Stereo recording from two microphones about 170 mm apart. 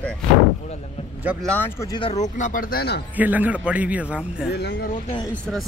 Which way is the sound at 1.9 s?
30° left (ahead or behind).